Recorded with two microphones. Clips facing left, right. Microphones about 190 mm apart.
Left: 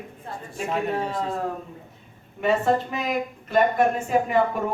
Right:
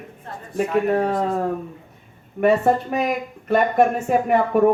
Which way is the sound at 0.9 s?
65° right (ahead or behind).